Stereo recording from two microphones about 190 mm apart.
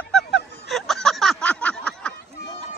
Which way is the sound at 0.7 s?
Centre (ahead or behind).